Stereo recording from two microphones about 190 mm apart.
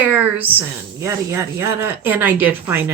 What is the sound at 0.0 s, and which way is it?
Speech, 10° right (ahead or behind).